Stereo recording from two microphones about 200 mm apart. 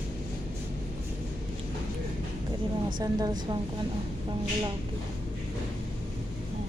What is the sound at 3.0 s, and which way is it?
Speech, 20° right (ahead or behind).